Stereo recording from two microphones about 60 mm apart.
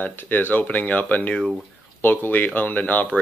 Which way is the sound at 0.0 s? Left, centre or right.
Left.